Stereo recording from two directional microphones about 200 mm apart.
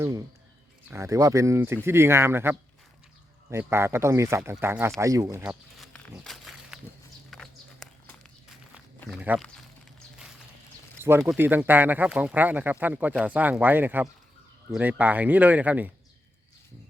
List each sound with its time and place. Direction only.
0.0 s speech: 20° right (ahead or behind)
5.7 s walk: centre (ahead or behind)
9.0 s speech: centre (ahead or behind)
11.2 s speech: 5° right (ahead or behind)